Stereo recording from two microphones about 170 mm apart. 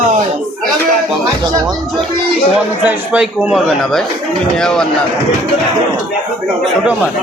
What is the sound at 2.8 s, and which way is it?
A man's voice, 10° right (ahead or behind).